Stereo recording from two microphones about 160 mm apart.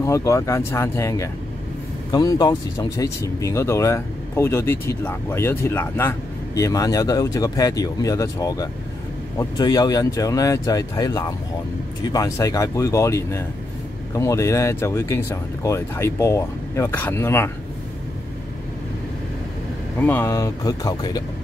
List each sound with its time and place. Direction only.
0.0 s speech: 20° left (ahead or behind)
20.0 s speech: 15° left (ahead or behind)